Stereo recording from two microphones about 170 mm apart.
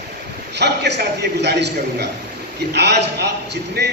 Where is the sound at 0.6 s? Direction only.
80° right.